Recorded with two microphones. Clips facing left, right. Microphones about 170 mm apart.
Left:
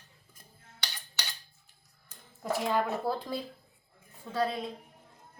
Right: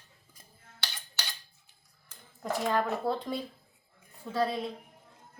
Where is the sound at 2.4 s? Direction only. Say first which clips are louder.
Even; 5° left (ahead or behind).